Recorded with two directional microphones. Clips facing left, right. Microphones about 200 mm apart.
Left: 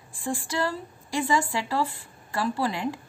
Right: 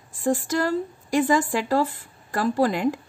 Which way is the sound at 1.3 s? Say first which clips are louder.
Right 5 dB; 45° right (ahead or behind).